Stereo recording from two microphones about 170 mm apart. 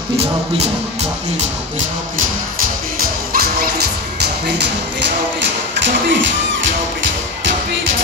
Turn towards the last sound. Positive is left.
turn(degrees=-90)